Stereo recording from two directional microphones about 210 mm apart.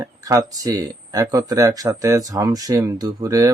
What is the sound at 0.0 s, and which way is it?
Speech, 15° right (ahead or behind).